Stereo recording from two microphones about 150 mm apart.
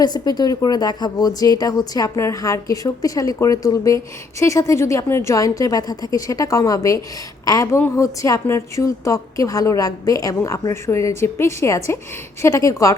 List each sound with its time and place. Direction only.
0.0 s a woman's voice: 25° left (ahead or behind)